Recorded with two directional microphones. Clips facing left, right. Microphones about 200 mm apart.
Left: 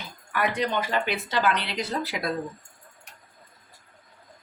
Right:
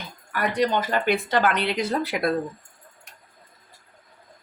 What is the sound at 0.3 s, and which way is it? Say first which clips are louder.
Speech: right 3 dB; 45° right (ahead or behind).